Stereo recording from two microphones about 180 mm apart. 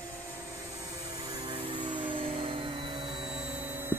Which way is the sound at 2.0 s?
30° right (ahead or behind).